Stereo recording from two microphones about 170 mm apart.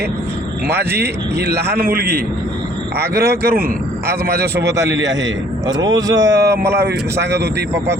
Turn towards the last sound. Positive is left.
turn(degrees=-15)  # may be behind; listen again after turning